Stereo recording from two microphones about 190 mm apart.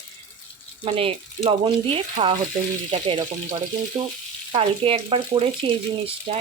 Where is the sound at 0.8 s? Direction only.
30° right (ahead or behind).